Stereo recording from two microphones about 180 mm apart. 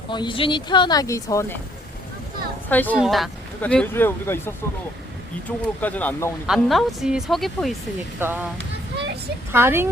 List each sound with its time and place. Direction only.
0.1 s speech: 25° left (ahead or behind)
2.6 s speech: 10° left (ahead or behind)
6.5 s speech: centre (ahead or behind)
8.2 s speech: 10° right (ahead or behind)
9.5 s speech: 15° right (ahead or behind)